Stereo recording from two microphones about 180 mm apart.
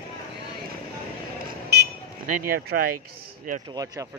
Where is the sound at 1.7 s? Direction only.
65° right (ahead or behind).